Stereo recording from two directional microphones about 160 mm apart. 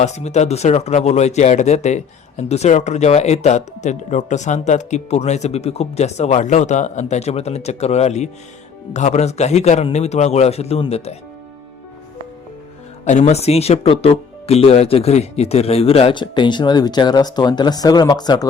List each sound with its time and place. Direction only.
0.0 s speech: 45° left (ahead or behind)
13.1 s speech: 45° left (ahead or behind); by 18.4 s 25° left (ahead or behind)